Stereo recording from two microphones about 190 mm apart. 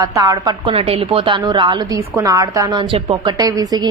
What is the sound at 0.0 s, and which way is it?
A woman's voice, 20° right (ahead or behind).